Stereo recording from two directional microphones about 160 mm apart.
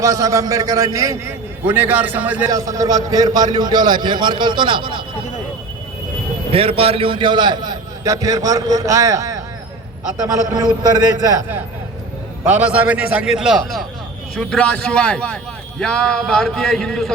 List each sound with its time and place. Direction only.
0.0 s a man's voice: 20° right (ahead or behind)
2.5 s a man's voice: 20° right (ahead or behind)
6.5 s a man's voice: 35° right (ahead or behind); by 9.4 s 20° right (ahead or behind)
10.8 s a man's voice: 25° right (ahead or behind)
12.5 s a man's voice: 10° right (ahead or behind)